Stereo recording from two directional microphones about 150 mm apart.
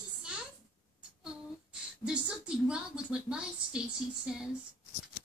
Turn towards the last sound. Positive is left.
turn(degrees=-5)  # may be behind; listen again after turning